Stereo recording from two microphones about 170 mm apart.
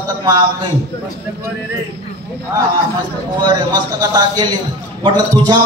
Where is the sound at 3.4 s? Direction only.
25° right (ahead or behind).